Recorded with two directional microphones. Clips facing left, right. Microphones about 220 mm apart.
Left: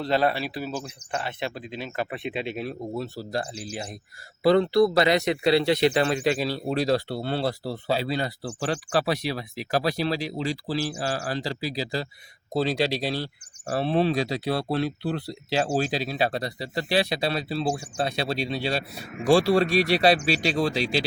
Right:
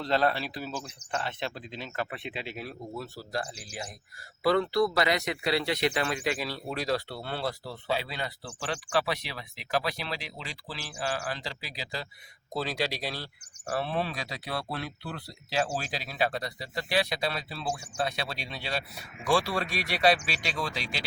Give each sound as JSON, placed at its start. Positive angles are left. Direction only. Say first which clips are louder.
{"t": 0.0, "sound": "speech", "louder": "left 3 dB", "side_deg": 10}